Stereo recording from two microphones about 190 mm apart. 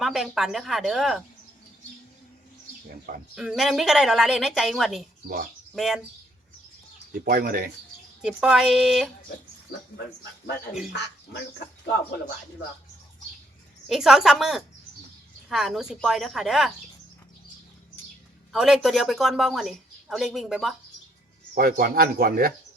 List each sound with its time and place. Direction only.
0.0 s speech: centre (ahead or behind)
3.3 s speech: centre (ahead or behind)
7.1 s speech: 50° right (ahead or behind)
8.2 s speech: 5° right (ahead or behind)
13.8 s speech: centre (ahead or behind)
18.5 s speech: centre (ahead or behind)
21.5 s speech: 50° right (ahead or behind)